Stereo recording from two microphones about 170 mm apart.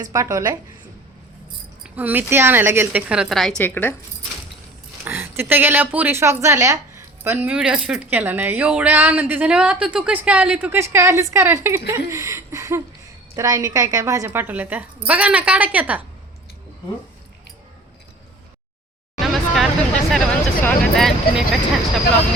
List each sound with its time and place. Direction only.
0.0 s a woman's voice: 20° right (ahead or behind)
1.8 s a woman's voice: 10° right (ahead or behind)
3.6 s speech: 10° left (ahead or behind)
5.0 s a woman's voice: 10° right (ahead or behind)
11.9 s chuckle: 15° right (ahead or behind)
13.3 s a woman's voice: 20° right (ahead or behind)
19.2 s a sound: centre (ahead or behind)